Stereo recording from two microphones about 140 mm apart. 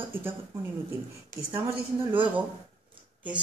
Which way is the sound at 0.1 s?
15° right (ahead or behind).